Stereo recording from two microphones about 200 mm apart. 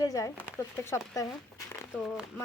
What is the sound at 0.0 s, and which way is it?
A woman's voice, 15° left (ahead or behind).